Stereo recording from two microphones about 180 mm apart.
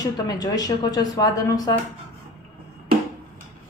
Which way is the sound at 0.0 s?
20° left (ahead or behind).